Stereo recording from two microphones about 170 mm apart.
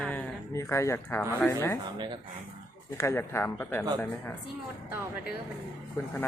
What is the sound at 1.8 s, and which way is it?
Speech, 25° right (ahead or behind).